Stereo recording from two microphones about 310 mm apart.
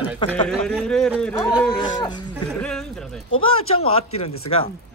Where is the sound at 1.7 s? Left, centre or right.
Centre.